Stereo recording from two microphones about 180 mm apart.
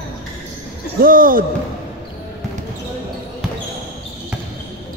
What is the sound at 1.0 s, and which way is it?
Speech, 50° right (ahead or behind).